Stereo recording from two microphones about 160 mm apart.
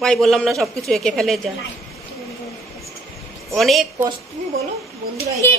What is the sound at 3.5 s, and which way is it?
Speech, centre (ahead or behind).